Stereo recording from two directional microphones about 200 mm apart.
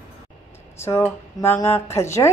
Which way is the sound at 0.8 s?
15° left (ahead or behind).